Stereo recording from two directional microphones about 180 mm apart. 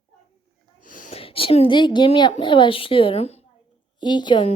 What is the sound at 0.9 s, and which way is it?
A woman's voice, 35° left (ahead or behind).